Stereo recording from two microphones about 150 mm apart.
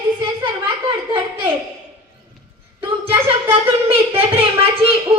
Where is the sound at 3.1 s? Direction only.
40° right (ahead or behind).